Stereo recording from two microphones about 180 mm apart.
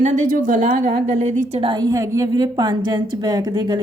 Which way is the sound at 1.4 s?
35° right (ahead or behind).